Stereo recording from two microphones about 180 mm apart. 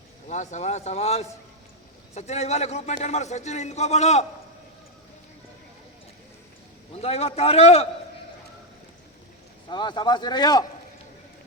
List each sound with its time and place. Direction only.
0.3 s a man's voice: 40° left (ahead or behind)
7.0 s a man's voice: 35° left (ahead or behind)
9.6 s speech: 25° left (ahead or behind)